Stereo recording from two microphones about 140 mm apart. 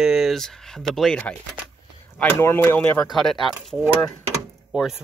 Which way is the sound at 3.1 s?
Centre (ahead or behind).